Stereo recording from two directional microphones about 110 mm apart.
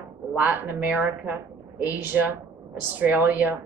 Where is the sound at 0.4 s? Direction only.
15° right (ahead or behind).